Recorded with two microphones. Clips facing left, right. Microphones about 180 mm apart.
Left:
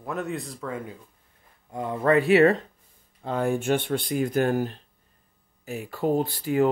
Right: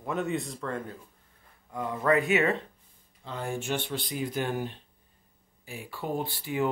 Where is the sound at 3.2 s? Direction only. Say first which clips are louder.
Left 9 dB; 60° left (ahead or behind).